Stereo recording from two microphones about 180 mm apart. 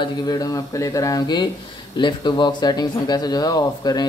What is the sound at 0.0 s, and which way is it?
Speech, 20° left (ahead or behind).